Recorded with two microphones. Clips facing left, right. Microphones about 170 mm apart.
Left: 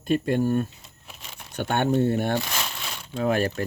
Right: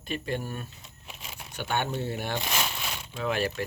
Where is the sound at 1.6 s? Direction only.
50° left (ahead or behind).